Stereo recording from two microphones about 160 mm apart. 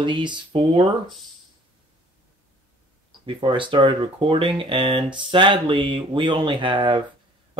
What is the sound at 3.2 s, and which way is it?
Speech, 30° right (ahead or behind).